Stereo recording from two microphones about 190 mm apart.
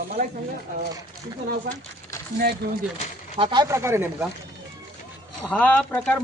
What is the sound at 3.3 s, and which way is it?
Speech, 25° right (ahead or behind).